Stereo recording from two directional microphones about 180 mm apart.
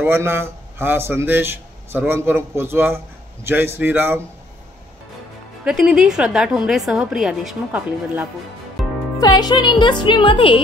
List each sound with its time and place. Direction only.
0.0 s a man's voice: 10° right (ahead or behind)
5.7 s a woman's voice: 5° right (ahead or behind)
8.8 s music: centre (ahead or behind)
9.2 s speech: 25° left (ahead or behind)